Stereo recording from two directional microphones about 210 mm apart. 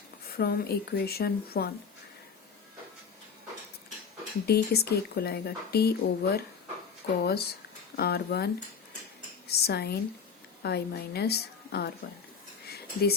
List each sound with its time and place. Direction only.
0.3 s speech: 45° left (ahead or behind)
4.4 s speech: 50° left (ahead or behind)
9.5 s speech: 50° left (ahead or behind)
12.6 s a sound: 50° left (ahead or behind)